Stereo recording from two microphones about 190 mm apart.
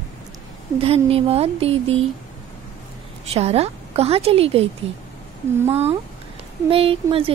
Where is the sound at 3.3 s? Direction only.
35° right (ahead or behind).